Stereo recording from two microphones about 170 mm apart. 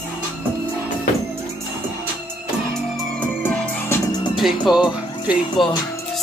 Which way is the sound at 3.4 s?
10° left (ahead or behind).